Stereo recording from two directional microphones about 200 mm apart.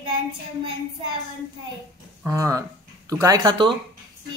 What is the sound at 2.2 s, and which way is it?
Speech, 15° right (ahead or behind).